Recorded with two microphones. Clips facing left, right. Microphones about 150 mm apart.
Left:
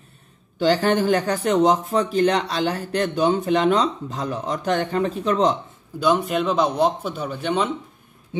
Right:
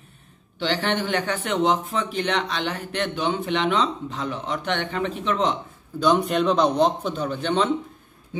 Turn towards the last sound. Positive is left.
turn(degrees=10)  # may be behind; listen again after turning